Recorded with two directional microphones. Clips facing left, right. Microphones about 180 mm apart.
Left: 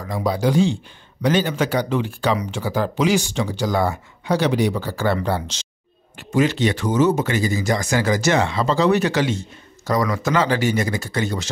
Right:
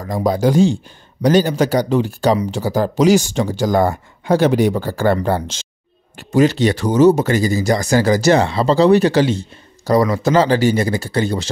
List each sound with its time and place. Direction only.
0.0 s speech: 45° right (ahead or behind)
6.1 s speech: 35° right (ahead or behind)